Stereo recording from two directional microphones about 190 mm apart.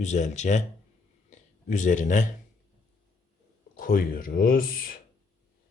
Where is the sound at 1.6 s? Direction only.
40° left (ahead or behind).